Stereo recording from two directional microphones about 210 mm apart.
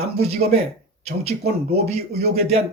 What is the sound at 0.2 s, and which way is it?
Speech, 30° right (ahead or behind).